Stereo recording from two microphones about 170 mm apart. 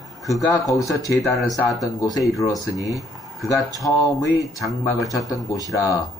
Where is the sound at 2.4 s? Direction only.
20° left (ahead or behind).